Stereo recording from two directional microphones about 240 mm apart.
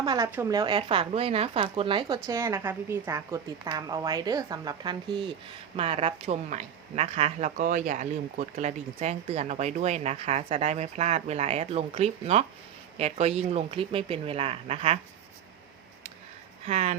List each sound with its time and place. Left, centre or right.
0.0 s speech: centre
16.6 s speech: right